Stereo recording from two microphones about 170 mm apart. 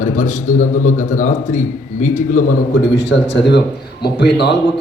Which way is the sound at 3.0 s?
90° left.